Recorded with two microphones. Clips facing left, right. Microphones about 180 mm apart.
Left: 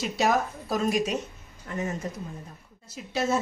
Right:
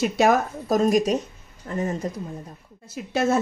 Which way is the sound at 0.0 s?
50° right (ahead or behind).